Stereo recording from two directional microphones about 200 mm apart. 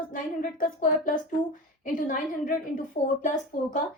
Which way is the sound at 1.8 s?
45° left (ahead or behind).